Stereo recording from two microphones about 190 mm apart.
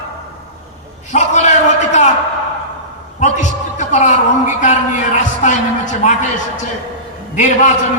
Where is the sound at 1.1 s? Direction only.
40° left (ahead or behind).